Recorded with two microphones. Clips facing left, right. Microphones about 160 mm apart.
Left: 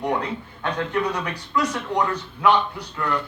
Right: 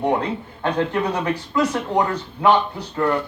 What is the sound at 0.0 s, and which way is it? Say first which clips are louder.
Speech: right 4 dB; 25° right (ahead or behind).